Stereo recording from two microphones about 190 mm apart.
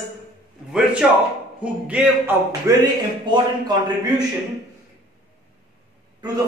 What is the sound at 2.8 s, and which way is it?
Speech, 20° right (ahead or behind).